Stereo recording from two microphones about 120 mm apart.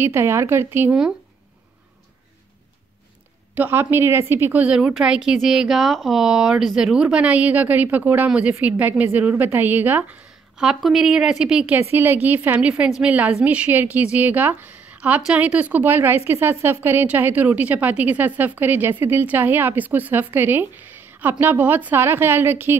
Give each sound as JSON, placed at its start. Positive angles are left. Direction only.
{"t": 0.0, "sound": "speech", "side_deg": -20}
{"t": 3.5, "sound": "a woman's voice", "side_deg": -15}
{"t": 10.6, "sound": "a woman's voice", "side_deg": -5}